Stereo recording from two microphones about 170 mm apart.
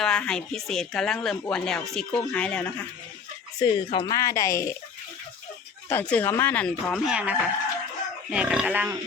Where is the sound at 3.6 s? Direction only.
25° left (ahead or behind).